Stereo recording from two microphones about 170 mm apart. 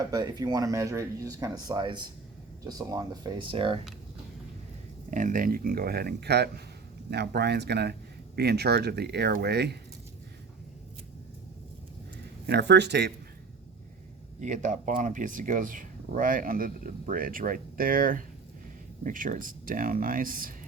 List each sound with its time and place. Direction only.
0.1 s speech: 20° right (ahead or behind)
5.1 s speech: 50° right (ahead or behind); by 9.7 s 75° right (ahead or behind)
12.5 s speech: 85° right
14.4 s speech: 50° right (ahead or behind)